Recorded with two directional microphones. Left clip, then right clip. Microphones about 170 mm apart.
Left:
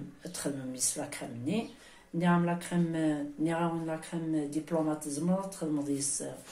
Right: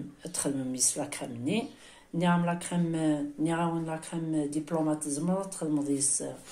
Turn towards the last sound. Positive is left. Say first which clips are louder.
# right 3 dB
turn(degrees=-25)  # may be behind; listen again after turning